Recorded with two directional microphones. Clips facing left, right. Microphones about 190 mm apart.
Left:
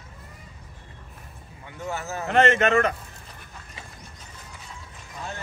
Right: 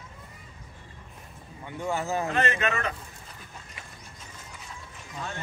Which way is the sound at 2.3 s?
55° left (ahead or behind).